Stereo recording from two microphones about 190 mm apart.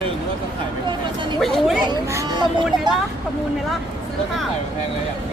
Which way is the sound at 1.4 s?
Centre (ahead or behind).